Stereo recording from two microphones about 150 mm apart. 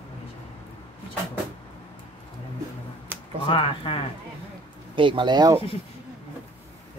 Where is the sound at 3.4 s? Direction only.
35° left (ahead or behind).